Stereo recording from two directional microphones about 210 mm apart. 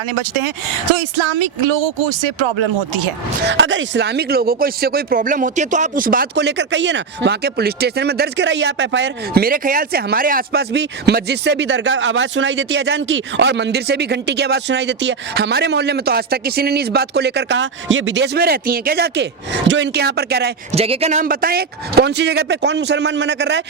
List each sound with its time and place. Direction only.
3.4 s speech: 60° right (ahead or behind)
20.7 s speech: 30° right (ahead or behind); by 23.6 s 55° right (ahead or behind)